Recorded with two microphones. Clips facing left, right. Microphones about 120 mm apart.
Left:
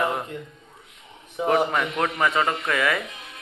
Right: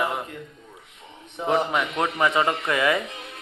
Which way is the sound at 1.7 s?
15° right (ahead or behind).